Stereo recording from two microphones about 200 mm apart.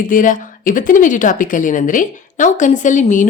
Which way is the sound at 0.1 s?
40° left (ahead or behind).